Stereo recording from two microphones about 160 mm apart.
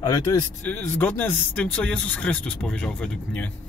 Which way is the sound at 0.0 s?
20° left (ahead or behind).